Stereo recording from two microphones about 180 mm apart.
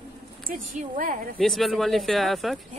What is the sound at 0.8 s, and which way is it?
Speech, 50° right (ahead or behind).